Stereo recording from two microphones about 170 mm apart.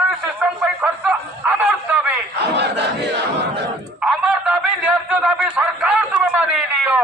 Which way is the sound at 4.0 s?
5° right (ahead or behind).